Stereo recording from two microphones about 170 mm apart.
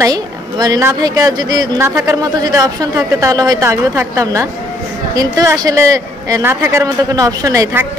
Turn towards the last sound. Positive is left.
turn(degrees=-20)  # may be behind; listen again after turning